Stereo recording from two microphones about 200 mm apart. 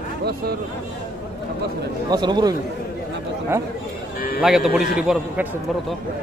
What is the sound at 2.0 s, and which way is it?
Speech, 20° right (ahead or behind).